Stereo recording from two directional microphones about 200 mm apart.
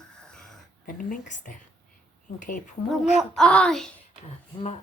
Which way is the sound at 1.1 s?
40° left (ahead or behind).